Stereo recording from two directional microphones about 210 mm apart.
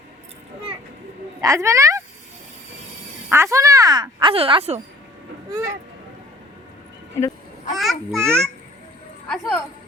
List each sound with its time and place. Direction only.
1.4 s a woman's voice: 15° right (ahead or behind)
3.2 s speech: 15° right (ahead or behind)
5.5 s speech: 15° right (ahead or behind)
7.7 s a child's voice: centre (ahead or behind)
8.2 s a child's voice: 10° right (ahead or behind)
9.3 s a child's voice: 5° left (ahead or behind)